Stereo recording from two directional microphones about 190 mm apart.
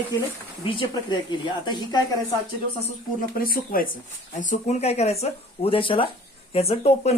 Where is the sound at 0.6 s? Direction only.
25° left (ahead or behind).